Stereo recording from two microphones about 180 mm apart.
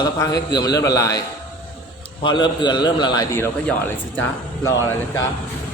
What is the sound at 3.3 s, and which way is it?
Speech, 10° left (ahead or behind).